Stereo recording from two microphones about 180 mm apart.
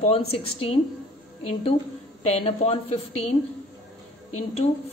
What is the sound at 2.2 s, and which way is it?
A woman's voice, 35° left (ahead or behind).